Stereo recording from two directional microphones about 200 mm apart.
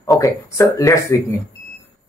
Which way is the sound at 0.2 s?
15° left (ahead or behind).